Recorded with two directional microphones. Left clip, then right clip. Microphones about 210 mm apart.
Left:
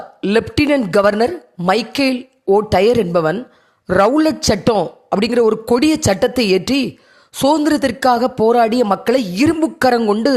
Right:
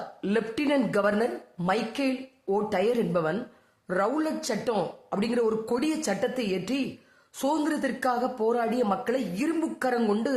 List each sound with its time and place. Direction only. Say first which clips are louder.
0.2 s a man's voice: left 13 dB; 40° left (ahead or behind)
10.0 s a man's voice: left 12 dB; 30° left (ahead or behind)